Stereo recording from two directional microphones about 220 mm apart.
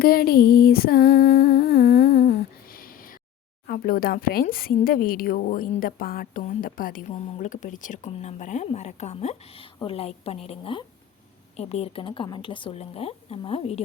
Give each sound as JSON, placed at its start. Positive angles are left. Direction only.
{"t": 0.0, "sound": "humming", "side_deg": 45}
{"t": 3.7, "sound": "a woman's voice", "side_deg": 40}